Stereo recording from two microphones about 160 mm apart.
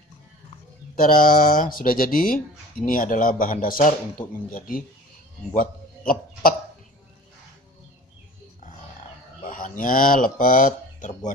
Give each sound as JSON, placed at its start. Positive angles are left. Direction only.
{"t": 0.9, "sound": "a man's voice", "side_deg": 60}
{"t": 9.4, "sound": "speech", "side_deg": 60}